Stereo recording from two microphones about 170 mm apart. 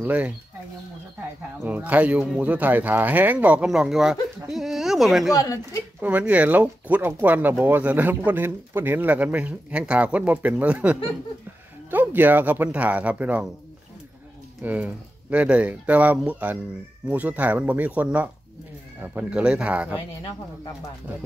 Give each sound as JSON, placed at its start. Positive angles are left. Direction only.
{"t": 0.0, "sound": "speech", "side_deg": -10}
{"t": 1.6, "sound": "speech", "side_deg": -10}
{"t": 5.3, "sound": "a woman's voice", "side_deg": 20}
{"t": 5.9, "sound": "speech", "side_deg": -10}
{"t": 14.6, "sound": "speech", "side_deg": -10}